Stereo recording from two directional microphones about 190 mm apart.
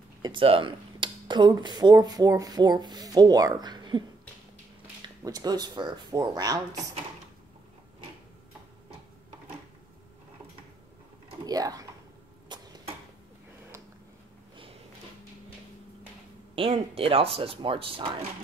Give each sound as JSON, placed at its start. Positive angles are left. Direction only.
{"t": 0.2, "sound": "speech", "side_deg": -25}
{"t": 5.2, "sound": "speech", "side_deg": -20}
{"t": 11.4, "sound": "speech", "side_deg": -20}
{"t": 12.4, "sound": "a sound", "side_deg": -25}
{"t": 16.7, "sound": "speech", "side_deg": -30}